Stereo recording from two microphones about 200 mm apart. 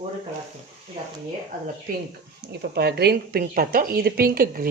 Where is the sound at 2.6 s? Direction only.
55° right (ahead or behind).